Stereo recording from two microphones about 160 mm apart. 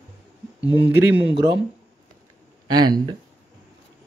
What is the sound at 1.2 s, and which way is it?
Speech, 30° right (ahead or behind).